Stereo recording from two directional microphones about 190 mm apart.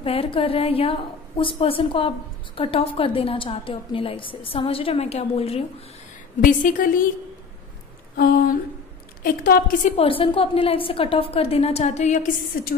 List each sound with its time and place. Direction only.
0.0 s a woman's voice: 30° left (ahead or behind)
6.4 s a woman's voice: 45° left (ahead or behind)
9.2 s a woman's voice: 50° left (ahead or behind)
9.9 s a woman's voice: 30° left (ahead or behind)